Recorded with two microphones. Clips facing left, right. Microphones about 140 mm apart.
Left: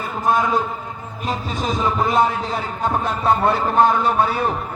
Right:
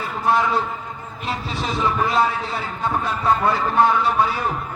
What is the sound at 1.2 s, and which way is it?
Speech, 45° left (ahead or behind).